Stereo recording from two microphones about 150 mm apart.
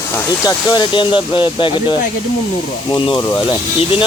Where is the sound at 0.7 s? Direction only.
30° left (ahead or behind).